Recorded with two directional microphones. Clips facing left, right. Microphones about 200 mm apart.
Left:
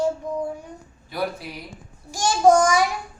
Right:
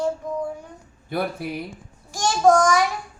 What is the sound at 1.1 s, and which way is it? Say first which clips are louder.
Speech: right 2 dB; 55° right (ahead or behind).